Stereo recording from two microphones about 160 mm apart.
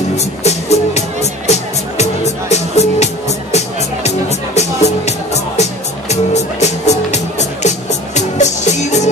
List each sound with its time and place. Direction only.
0.1 s music: 45° left (ahead or behind)